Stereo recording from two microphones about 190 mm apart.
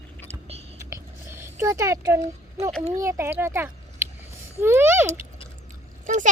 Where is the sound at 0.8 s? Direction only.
15° right (ahead or behind).